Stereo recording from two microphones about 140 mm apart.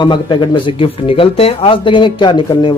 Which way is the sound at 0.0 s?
35° left (ahead or behind).